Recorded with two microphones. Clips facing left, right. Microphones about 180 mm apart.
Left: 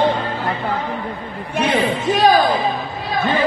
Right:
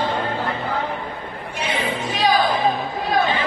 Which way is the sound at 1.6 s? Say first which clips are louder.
Left 7 dB; 55° left (ahead or behind).